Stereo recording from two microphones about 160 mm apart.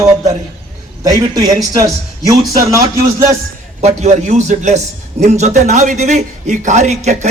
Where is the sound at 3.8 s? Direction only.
45° right (ahead or behind).